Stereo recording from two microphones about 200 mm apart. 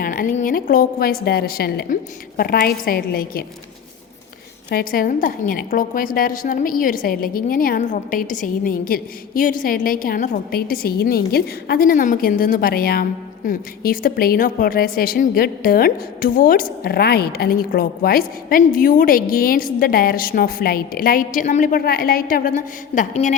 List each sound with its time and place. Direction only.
0.0 s a woman's voice: 40° left (ahead or behind)
4.7 s a woman's voice: 50° left (ahead or behind)